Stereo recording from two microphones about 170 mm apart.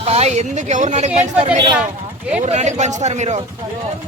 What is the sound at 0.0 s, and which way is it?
A woman's voice, 35° right (ahead or behind).